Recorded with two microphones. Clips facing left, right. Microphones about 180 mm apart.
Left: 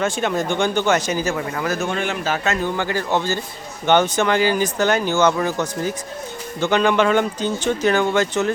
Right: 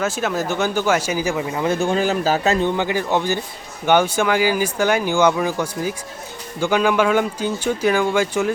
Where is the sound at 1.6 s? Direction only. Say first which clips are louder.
Right 5 dB; 30° right (ahead or behind).